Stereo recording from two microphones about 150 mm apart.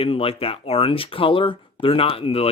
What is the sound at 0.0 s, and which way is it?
Speech, 40° left (ahead or behind).